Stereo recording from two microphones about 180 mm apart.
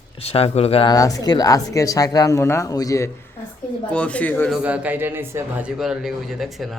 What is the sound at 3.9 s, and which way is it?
Speech, 5° left (ahead or behind).